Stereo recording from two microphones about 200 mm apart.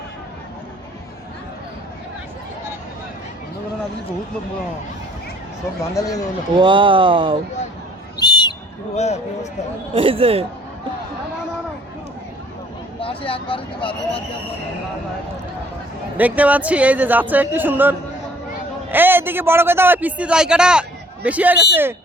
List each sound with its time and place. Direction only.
5.9 s a man's voice: 15° left (ahead or behind)
6.6 s speech: 25° right (ahead or behind)
8.2 s a sound: 20° left (ahead or behind)
9.0 s speech: 35° left (ahead or behind)
9.9 s speech: 30° right (ahead or behind)
13.0 s speech: 25° left (ahead or behind)
16.1 s a man's voice: 10° right (ahead or behind)